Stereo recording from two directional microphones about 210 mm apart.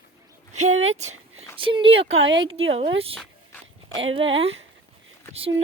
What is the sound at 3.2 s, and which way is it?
Dog, 5° left (ahead or behind).